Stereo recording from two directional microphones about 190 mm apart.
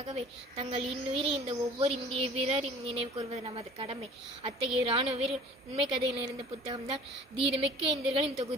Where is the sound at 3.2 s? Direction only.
30° right (ahead or behind).